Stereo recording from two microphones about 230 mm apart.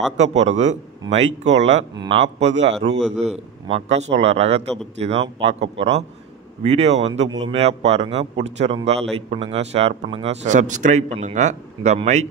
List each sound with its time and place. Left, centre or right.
0.2 s speech: right